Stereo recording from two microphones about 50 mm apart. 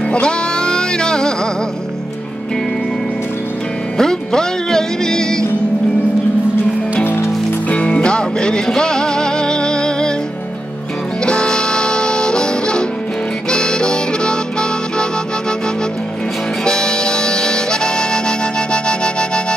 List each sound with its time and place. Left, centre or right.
0.1 s music: centre
4.0 s music: centre
7.6 s music: left; by 10.1 s centre
11.2 s music: centre
16.6 s harmonica: centre